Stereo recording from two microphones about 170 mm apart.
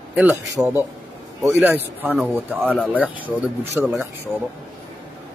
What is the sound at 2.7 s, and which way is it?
Speech, 5° left (ahead or behind).